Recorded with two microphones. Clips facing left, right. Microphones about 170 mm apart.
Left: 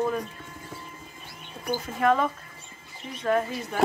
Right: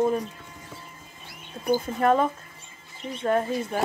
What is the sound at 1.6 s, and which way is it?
Speech, 30° right (ahead or behind).